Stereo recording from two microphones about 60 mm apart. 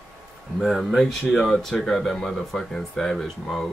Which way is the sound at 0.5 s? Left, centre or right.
Centre.